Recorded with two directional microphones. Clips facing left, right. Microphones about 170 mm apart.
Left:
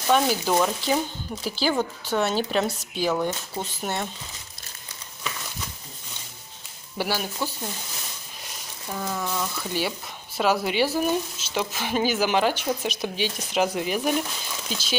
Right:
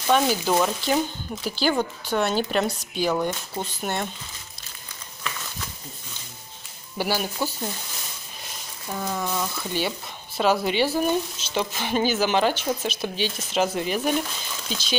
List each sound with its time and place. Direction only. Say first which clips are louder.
0.0 s speech: even; centre (ahead or behind)
7.0 s speech: right 2 dB; centre (ahead or behind)
9.0 s speech: right 1 dB; 5° right (ahead or behind)
9.8 s speech: right 1 dB; 5° left (ahead or behind)